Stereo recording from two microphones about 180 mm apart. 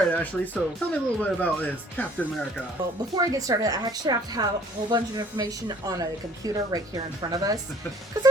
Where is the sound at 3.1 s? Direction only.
20° right (ahead or behind).